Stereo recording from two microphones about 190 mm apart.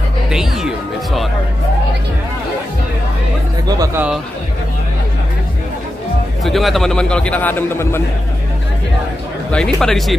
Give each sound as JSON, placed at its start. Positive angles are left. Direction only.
{"t": 0.3, "sound": "speech", "side_deg": 0}
{"t": 3.6, "sound": "speech", "side_deg": -20}
{"t": 6.4, "sound": "a man's voice", "side_deg": 0}
{"t": 9.5, "sound": "a man's voice", "side_deg": 5}